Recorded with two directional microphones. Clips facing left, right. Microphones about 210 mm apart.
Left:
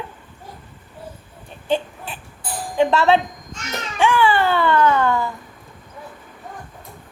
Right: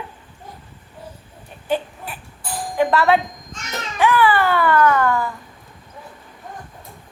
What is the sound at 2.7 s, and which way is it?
Speech, 25° left (ahead or behind).